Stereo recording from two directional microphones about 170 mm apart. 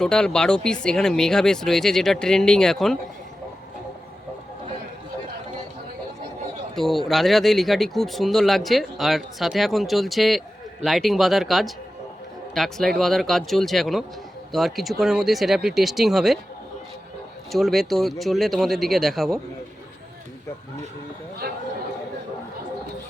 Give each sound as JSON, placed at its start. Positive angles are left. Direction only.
{"t": 0.0, "sound": "speech", "side_deg": 5}
{"t": 6.7, "sound": "speech", "side_deg": 0}
{"t": 17.5, "sound": "speech", "side_deg": 0}
{"t": 21.4, "sound": "speech", "side_deg": -65}